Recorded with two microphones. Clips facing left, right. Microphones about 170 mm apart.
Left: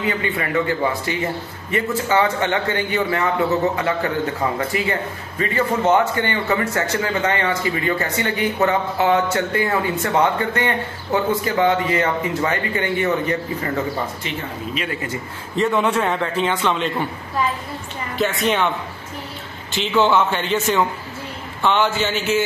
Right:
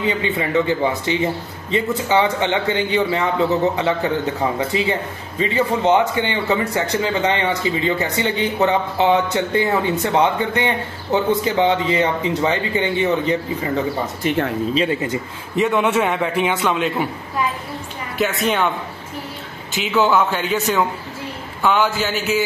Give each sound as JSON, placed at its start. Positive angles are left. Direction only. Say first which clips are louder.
{"t": 0.0, "sound": "a man's voice", "louder": "right 2 dB", "side_deg": -20}
{"t": 14.2, "sound": "speech", "louder": "right 9 dB", "side_deg": -50}
{"t": 14.7, "sound": "speech", "louder": "right 6 dB", "side_deg": -25}
{"t": 15.7, "sound": "a man's voice", "louder": "right 2 dB", "side_deg": -5}
{"t": 18.1, "sound": "speech", "louder": "even", "side_deg": 0}
{"t": 19.9, "sound": "speech", "louder": "even", "side_deg": -5}